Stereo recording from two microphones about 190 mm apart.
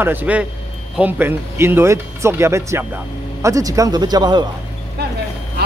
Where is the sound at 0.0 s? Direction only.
10° right (ahead or behind).